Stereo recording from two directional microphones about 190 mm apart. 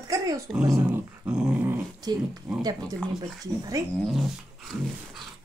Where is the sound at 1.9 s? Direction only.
20° right (ahead or behind).